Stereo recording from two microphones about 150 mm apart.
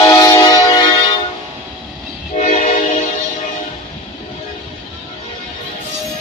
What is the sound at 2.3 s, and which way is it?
Train, 55° left (ahead or behind).